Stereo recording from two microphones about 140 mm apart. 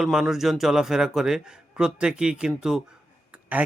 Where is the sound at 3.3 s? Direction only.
10° right (ahead or behind).